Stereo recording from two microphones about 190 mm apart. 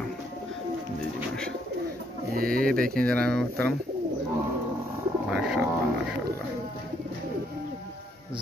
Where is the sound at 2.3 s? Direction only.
50° right (ahead or behind).